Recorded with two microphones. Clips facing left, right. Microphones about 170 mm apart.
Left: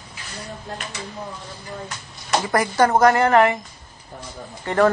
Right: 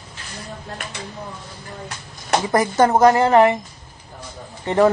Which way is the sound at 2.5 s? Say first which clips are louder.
Right 2 dB; 20° right (ahead or behind).